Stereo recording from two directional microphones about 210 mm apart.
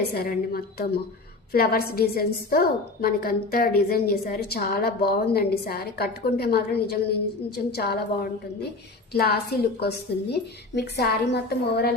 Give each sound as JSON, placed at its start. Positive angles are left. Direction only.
{"t": 0.1, "sound": "a woman's voice", "side_deg": 45}